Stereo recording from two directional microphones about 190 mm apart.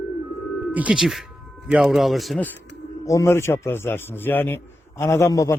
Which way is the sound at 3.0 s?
15° left (ahead or behind).